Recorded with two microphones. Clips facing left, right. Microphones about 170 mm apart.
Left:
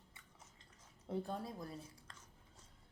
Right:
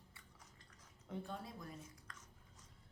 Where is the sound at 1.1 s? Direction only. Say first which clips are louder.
Left 5 dB; 35° left (ahead or behind).